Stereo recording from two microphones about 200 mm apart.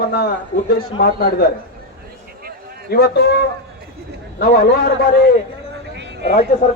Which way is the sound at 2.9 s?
55° left (ahead or behind).